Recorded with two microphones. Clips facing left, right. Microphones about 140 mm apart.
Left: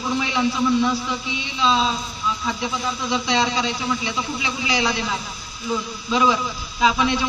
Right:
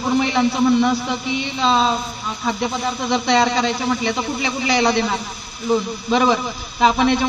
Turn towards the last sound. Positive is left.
turn(degrees=-55)  # may be behind; listen again after turning